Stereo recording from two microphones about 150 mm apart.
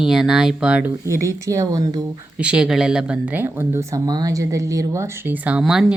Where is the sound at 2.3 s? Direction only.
5° right (ahead or behind).